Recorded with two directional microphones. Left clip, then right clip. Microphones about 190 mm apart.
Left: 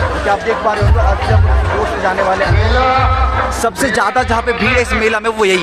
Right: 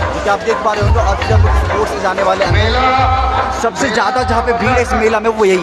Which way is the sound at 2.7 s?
40° right (ahead or behind).